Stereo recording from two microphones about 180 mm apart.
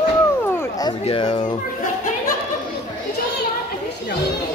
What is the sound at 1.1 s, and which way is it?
Speech, 30° left (ahead or behind).